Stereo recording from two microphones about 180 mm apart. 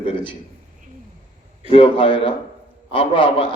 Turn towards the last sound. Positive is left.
turn(degrees=30)  # may be behind; listen again after turning